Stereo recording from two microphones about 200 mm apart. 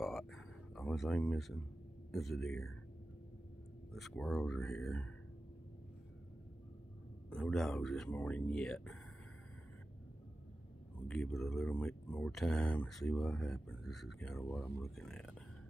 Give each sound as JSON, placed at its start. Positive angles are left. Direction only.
{"t": 0.0, "sound": "frog", "side_deg": 0}
{"t": 2.1, "sound": "speech", "side_deg": 0}
{"t": 3.9, "sound": "speech", "side_deg": 0}
{"t": 7.2, "sound": "speech", "side_deg": 5}
{"t": 11.0, "sound": "speech", "side_deg": 5}